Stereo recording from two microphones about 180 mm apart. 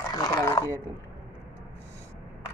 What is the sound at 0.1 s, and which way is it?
Dog, 20° left (ahead or behind).